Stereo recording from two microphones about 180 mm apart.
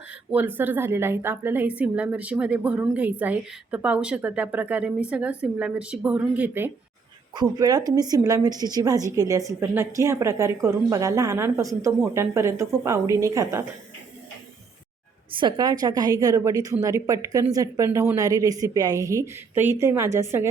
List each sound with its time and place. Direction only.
0.3 s a woman's voice: 10° right (ahead or behind)
7.3 s a woman's voice: 20° right (ahead or behind)
15.3 s a woman's voice: 25° right (ahead or behind)